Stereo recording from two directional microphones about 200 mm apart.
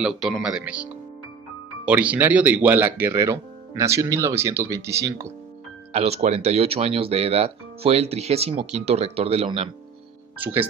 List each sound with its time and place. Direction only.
0.0 s speech: 5° right (ahead or behind)
5.9 s speech: 30° right (ahead or behind)
10.4 s speech: 10° right (ahead or behind)